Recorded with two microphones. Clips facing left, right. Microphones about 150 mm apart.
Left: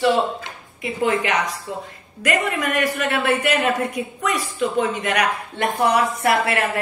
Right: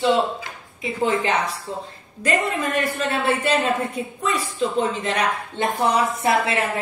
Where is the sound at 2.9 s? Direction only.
30° right (ahead or behind).